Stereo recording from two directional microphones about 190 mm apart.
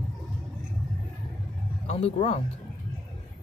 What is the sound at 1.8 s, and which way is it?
Speech, 35° left (ahead or behind).